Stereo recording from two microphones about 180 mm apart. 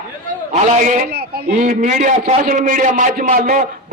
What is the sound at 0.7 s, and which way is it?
A man's voice, 45° right (ahead or behind).